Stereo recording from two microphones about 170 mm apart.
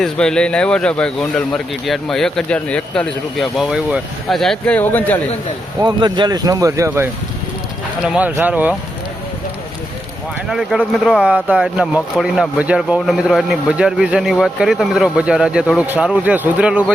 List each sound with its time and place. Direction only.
0.0 s speech: 5° left (ahead or behind)
5.8 s speech: 25° right (ahead or behind); by 8.7 s 10° right (ahead or behind)
10.5 s speech: centre (ahead or behind)